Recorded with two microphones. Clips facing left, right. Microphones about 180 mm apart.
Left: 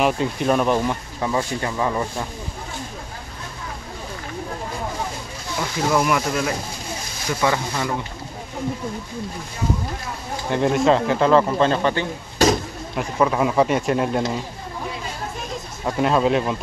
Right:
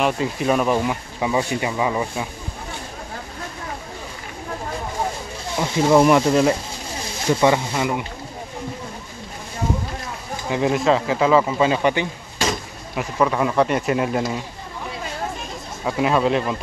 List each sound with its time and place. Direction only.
0.0 s speech: centre (ahead or behind)
5.6 s speech: 25° right (ahead or behind)
10.5 s speech: centre (ahead or behind)
12.9 s speech: centre (ahead or behind)
15.8 s speech: centre (ahead or behind)